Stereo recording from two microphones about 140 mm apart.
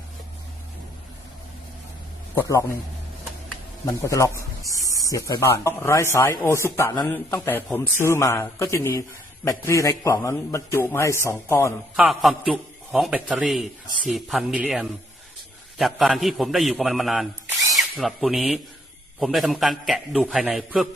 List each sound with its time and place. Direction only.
2.3 s a man's voice: 20° left (ahead or behind)
3.8 s a man's voice: 20° left (ahead or behind)
11.9 s a man's voice: centre (ahead or behind)